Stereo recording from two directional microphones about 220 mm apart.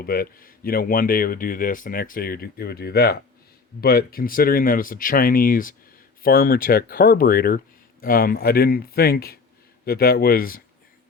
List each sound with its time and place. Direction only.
0.0 s speech: 40° left (ahead or behind)